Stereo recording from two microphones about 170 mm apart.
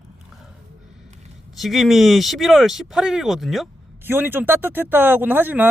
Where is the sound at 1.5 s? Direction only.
Centre (ahead or behind).